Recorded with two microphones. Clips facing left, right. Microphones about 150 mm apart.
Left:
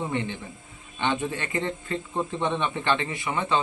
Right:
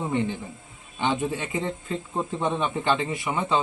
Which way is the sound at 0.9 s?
10° right (ahead or behind).